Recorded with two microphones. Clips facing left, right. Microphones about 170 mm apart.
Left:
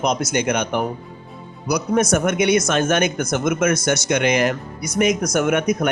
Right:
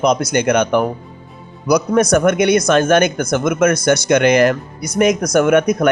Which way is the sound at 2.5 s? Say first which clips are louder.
Right 5 dB; 35° right (ahead or behind).